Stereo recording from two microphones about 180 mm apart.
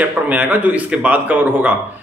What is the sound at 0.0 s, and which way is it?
A man's voice, 10° right (ahead or behind).